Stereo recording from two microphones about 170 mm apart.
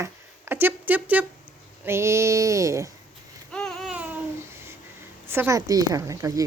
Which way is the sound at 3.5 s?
5° left (ahead or behind).